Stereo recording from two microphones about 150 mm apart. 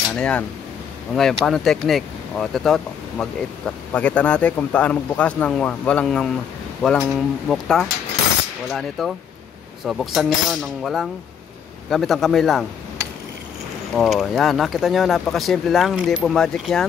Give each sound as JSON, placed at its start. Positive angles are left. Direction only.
{"t": 0.1, "sound": "speech", "side_deg": 5}
{"t": 13.9, "sound": "speech", "side_deg": 0}